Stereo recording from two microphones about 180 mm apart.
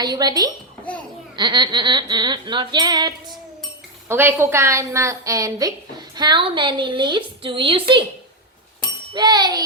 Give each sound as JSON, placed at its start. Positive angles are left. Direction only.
{"t": 0.0, "sound": "a woman's voice", "side_deg": -20}
{"t": 4.1, "sound": "a woman's voice", "side_deg": -10}
{"t": 9.1, "sound": "a woman's voice", "side_deg": -20}